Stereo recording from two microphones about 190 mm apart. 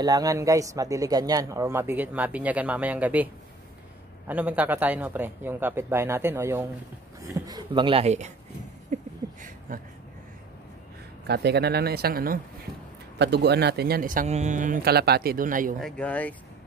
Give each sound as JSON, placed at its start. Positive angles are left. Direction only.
{"t": 0.0, "sound": "speech", "side_deg": -20}
{"t": 4.3, "sound": "speech", "side_deg": -10}
{"t": 8.9, "sound": "a sound", "side_deg": -45}
{"t": 11.2, "sound": "speech", "side_deg": -60}
{"t": 13.2, "sound": "speech", "side_deg": -60}
{"t": 15.8, "sound": "speech", "side_deg": 5}